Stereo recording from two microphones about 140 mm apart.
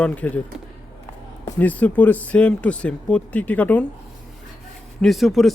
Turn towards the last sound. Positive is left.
turn(degrees=0)  # may be behind; listen again after turning